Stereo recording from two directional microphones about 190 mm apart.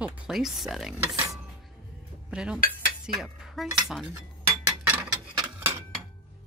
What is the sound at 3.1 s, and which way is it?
Speech, 5° right (ahead or behind).